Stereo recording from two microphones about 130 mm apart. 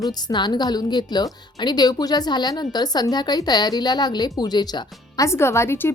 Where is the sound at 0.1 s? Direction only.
30° left (ahead or behind).